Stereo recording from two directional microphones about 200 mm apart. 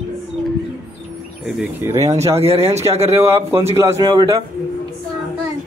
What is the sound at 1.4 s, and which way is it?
Speech, 5° right (ahead or behind).